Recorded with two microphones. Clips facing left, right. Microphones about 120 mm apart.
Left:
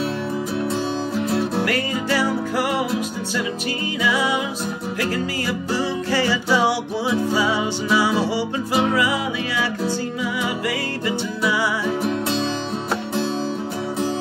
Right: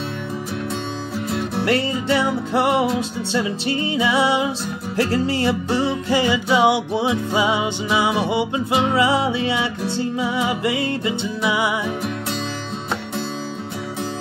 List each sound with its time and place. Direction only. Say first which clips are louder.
1.6 s music: right 2 dB; 25° right (ahead or behind)